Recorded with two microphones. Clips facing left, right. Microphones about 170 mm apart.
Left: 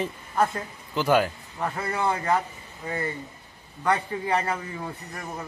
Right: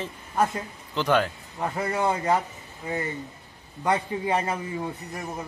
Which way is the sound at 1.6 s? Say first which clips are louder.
Right 1 dB; 15° right (ahead or behind).